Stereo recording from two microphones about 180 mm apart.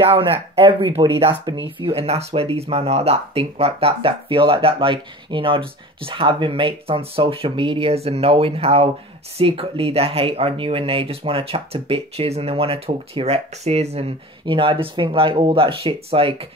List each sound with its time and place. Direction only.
0.2 s speech: 30° right (ahead or behind)